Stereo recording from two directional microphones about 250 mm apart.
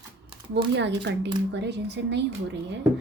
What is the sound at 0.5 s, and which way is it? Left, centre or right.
Speech, right.